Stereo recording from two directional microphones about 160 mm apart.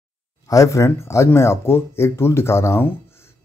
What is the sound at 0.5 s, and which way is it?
Speech, 20° left (ahead or behind).